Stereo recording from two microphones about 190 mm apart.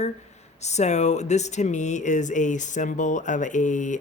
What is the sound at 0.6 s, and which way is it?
Speech, 35° left (ahead or behind).